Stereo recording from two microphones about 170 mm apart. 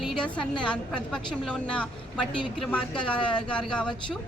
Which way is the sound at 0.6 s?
5° left (ahead or behind).